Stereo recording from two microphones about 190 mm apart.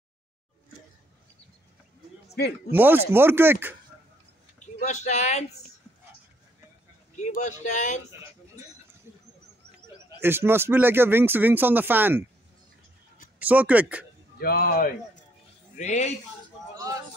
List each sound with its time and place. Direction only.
2.3 s a man's voice: 60° left (ahead or behind)
2.7 s speech: 10° right (ahead or behind)
4.8 s speech: 40° left (ahead or behind)
7.2 s speech: 40° left (ahead or behind)
10.0 s speech: 10° right (ahead or behind)
13.4 s speech: 10° right (ahead or behind)
14.4 s a man's voice: 55° left (ahead or behind)
15.7 s speech: 40° left (ahead or behind)
16.7 s a sound: 15° right (ahead or behind)